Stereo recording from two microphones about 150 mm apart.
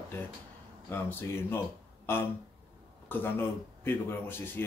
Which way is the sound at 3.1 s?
15° left (ahead or behind).